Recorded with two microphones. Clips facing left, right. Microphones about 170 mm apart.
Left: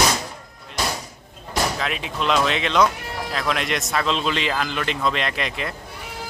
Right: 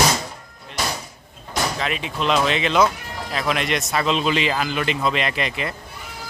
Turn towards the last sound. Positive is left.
turn(degrees=0)  # may be behind; listen again after turning